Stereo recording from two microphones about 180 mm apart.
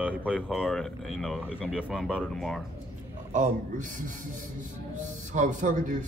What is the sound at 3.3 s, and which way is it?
Speech, 45° right (ahead or behind).